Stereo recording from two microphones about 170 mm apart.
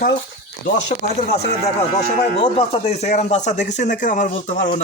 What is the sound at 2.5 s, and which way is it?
Speech, 35° left (ahead or behind).